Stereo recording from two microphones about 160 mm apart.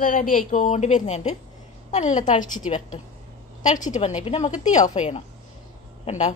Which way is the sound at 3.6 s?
50° left (ahead or behind).